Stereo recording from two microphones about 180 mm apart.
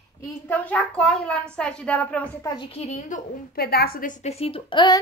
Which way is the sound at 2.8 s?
40° left (ahead or behind).